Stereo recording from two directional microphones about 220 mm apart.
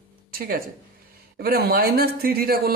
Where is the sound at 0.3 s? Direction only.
40° right (ahead or behind).